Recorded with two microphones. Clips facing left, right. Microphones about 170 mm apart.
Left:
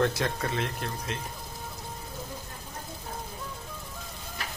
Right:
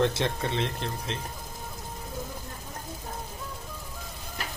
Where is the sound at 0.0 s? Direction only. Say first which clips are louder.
Right 1 dB; 25° right (ahead or behind).